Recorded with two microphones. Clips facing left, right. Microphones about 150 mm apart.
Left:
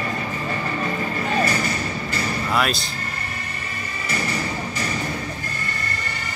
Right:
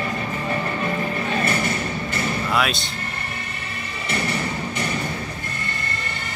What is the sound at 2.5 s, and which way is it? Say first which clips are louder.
Speech: left 1 dB; centre (ahead or behind).